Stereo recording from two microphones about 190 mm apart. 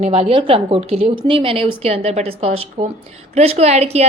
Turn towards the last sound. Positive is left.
turn(degrees=-35)  # may be behind; listen again after turning